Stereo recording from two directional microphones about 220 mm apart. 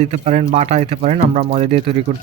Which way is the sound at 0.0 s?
30° right (ahead or behind).